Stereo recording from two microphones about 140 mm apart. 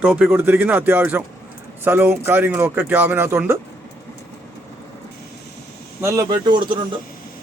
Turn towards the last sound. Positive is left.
turn(degrees=-35)  # may be behind; listen again after turning